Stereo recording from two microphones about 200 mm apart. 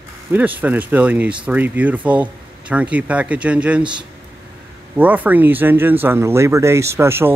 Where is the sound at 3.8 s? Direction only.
25° right (ahead or behind).